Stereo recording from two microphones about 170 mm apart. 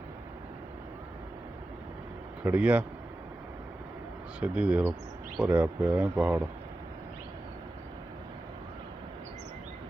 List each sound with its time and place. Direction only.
2.4 s speech: 10° right (ahead or behind)
4.4 s speech: 5° right (ahead or behind)